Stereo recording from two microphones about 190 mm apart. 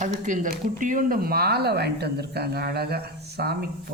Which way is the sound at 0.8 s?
45° right (ahead or behind).